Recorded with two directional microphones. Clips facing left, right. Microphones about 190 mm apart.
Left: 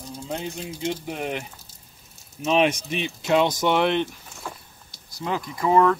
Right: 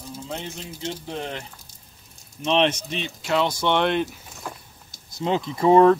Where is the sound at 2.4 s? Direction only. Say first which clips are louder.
Even; 5° left (ahead or behind).